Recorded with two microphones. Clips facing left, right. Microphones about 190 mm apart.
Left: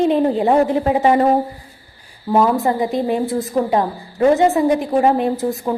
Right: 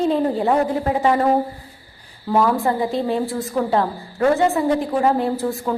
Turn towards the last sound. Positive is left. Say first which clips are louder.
# left 2 dB
turn(degrees=20)  # may be behind; listen again after turning